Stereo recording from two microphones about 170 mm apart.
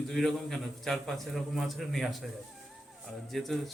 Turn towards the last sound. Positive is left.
turn(degrees=0)  # may be behind; listen again after turning